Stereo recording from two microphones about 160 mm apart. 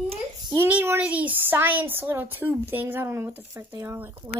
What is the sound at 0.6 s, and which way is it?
Speech, 10° right (ahead or behind).